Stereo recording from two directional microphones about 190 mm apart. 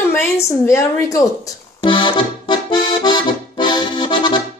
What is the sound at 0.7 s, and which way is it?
Speech, 15° left (ahead or behind).